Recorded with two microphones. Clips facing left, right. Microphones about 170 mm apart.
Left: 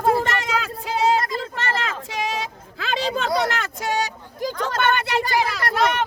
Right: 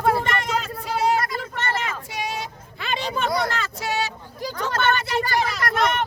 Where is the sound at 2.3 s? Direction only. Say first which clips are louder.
Left 3 dB; 90° left.